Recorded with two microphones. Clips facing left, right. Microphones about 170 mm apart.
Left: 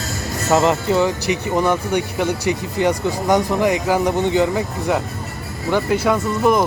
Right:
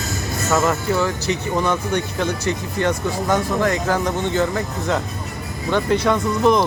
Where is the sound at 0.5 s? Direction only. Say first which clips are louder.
Left 4 dB; 20° left (ahead or behind).